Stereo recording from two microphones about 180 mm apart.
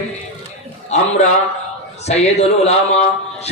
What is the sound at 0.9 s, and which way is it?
A man's voice, 40° left (ahead or behind).